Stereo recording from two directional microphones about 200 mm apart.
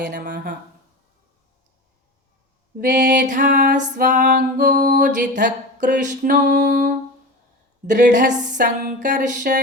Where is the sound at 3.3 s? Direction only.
40° right (ahead or behind).